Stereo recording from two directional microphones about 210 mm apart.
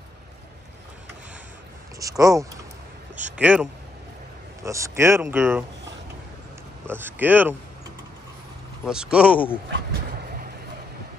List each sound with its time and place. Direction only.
2.0 s a man's voice: 15° right (ahead or behind)
4.6 s speech: 15° right (ahead or behind)
6.9 s speech: 10° right (ahead or behind)
8.8 s speech: 5° right (ahead or behind)